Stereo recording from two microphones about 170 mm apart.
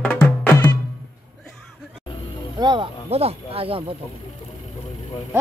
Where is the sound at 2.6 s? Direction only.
30° right (ahead or behind).